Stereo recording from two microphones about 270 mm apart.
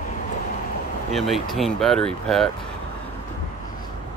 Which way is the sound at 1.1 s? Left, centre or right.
Centre.